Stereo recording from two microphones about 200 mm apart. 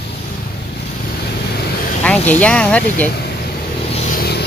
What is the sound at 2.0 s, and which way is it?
Speech, 5° left (ahead or behind).